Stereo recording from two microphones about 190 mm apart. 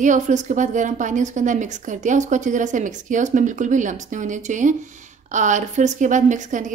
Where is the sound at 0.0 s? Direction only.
40° right (ahead or behind).